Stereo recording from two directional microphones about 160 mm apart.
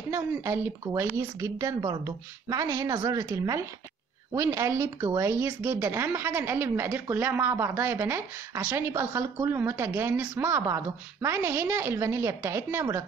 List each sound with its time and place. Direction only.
0.1 s a woman's voice: 15° right (ahead or behind)